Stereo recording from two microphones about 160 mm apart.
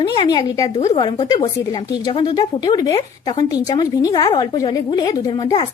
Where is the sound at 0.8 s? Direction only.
35° left (ahead or behind).